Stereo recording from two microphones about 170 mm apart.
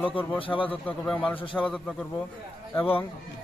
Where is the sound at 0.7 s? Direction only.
10° left (ahead or behind).